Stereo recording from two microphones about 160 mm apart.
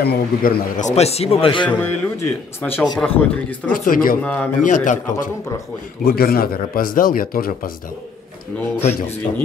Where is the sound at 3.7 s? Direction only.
60° left (ahead or behind).